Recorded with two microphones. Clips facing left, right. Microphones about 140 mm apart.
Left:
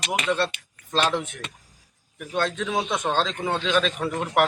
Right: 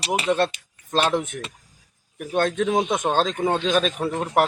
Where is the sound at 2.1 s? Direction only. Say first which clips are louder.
Right 4 dB; 50° right (ahead or behind).